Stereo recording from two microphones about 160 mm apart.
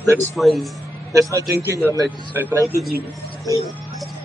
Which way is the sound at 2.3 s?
20° right (ahead or behind).